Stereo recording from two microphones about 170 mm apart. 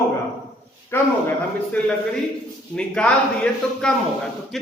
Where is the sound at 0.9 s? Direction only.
15° left (ahead or behind).